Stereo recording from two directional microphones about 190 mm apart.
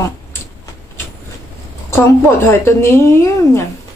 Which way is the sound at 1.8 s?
15° left (ahead or behind).